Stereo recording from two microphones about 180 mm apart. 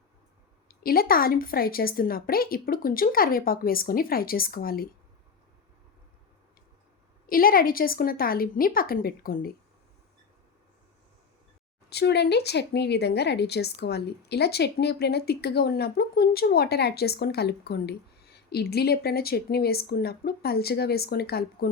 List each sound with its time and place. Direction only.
0.7 s a woman's voice: 55° left (ahead or behind)
7.3 s a woman's voice: 55° left (ahead or behind)
11.9 s a woman's voice: 65° left (ahead or behind)